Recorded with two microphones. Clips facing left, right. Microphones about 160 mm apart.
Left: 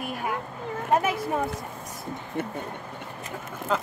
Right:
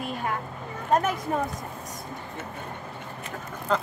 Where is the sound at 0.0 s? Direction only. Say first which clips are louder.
Even; 5° left (ahead or behind).